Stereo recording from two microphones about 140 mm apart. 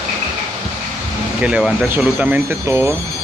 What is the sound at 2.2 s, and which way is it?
Speech, 15° right (ahead or behind).